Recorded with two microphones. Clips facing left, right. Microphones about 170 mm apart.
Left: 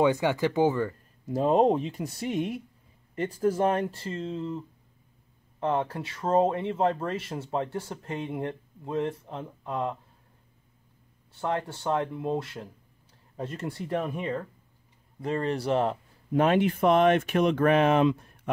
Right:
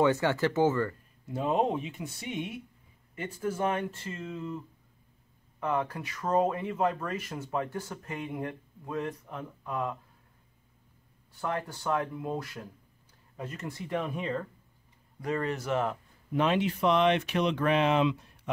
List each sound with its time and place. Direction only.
0.0 s speech: 15° left (ahead or behind)
1.2 s speech: 40° left (ahead or behind)
11.3 s speech: 25° left (ahead or behind)
13.9 s speech: 5° left (ahead or behind)
15.1 s speech: 30° left (ahead or behind)
16.3 s speech: 50° left (ahead or behind)